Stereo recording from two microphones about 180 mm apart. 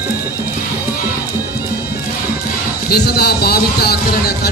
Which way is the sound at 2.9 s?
60° left (ahead or behind).